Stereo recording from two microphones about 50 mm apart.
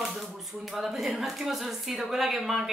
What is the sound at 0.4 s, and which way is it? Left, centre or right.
A woman's voice, centre.